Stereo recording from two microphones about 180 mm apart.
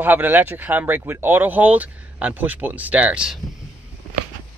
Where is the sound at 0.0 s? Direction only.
10° right (ahead or behind).